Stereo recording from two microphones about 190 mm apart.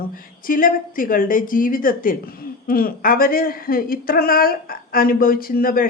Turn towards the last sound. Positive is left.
turn(degrees=50)  # may be behind; listen again after turning